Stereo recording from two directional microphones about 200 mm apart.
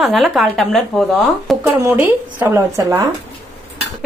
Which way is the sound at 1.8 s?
10° right (ahead or behind).